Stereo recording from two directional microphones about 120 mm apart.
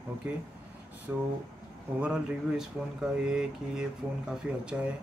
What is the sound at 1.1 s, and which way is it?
Speech, 20° right (ahead or behind).